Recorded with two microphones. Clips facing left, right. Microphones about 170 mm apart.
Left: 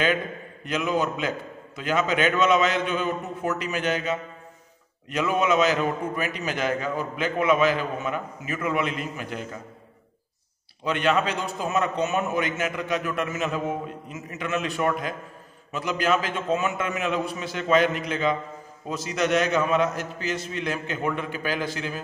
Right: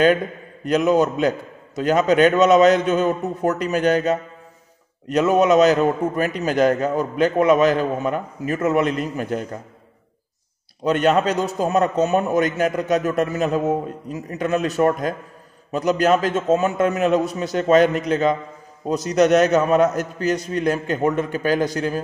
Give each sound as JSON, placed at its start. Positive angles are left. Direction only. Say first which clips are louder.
{"t": 0.7, "sound": "a man's voice", "louder": "right 8 dB", "side_deg": -40}
{"t": 10.8, "sound": "a man's voice", "louder": "right 6 dB", "side_deg": -40}